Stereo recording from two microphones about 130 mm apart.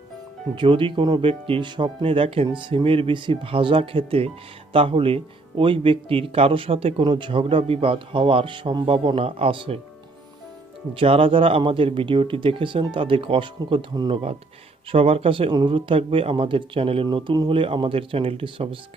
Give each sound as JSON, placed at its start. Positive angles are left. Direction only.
{"t": 0.5, "sound": "speech", "side_deg": -40}
{"t": 10.9, "sound": "speech", "side_deg": -45}
{"t": 14.1, "sound": "speech", "side_deg": -45}